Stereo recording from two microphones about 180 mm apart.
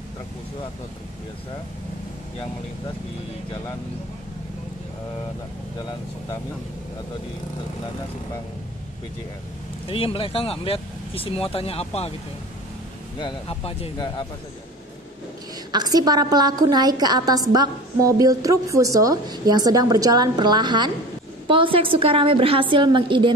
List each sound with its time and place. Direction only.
9.8 s speech: 30° left (ahead or behind)
13.2 s speech: 30° left (ahead or behind)
15.7 s a woman's voice: 20° right (ahead or behind)